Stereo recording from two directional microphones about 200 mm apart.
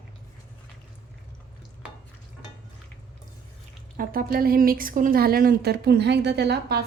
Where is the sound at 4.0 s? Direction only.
45° right (ahead or behind).